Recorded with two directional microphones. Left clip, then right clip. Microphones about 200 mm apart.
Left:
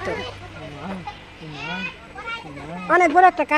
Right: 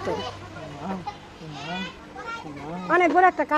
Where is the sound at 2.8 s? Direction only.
15° left (ahead or behind).